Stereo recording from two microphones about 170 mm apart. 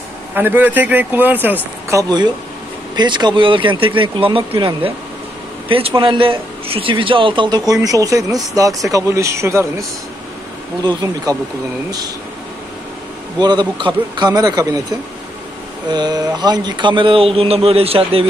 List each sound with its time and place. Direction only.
0.3 s a man's voice: 10° right (ahead or behind)
13.4 s a man's voice: 25° right (ahead or behind)